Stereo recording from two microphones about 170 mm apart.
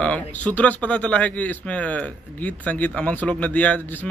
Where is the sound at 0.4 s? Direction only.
10° left (ahead or behind).